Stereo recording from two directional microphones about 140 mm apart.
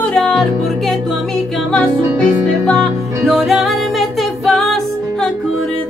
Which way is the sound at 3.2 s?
Centre (ahead or behind).